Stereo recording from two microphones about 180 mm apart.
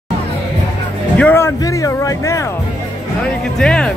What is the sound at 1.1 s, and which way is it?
Music, 10° left (ahead or behind).